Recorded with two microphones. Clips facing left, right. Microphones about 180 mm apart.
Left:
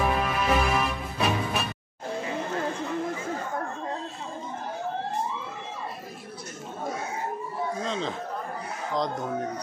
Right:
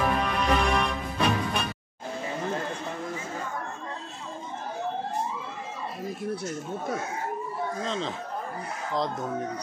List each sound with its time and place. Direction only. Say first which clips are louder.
0.0 s music: even; 5° left (ahead or behind)
7.8 s chatter: right 1 dB; centre (ahead or behind)